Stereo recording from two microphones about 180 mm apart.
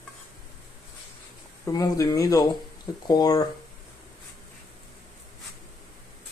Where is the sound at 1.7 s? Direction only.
20° left (ahead or behind).